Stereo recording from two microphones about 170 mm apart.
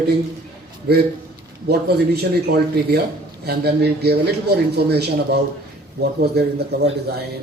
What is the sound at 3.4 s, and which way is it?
Speech, 70° right (ahead or behind).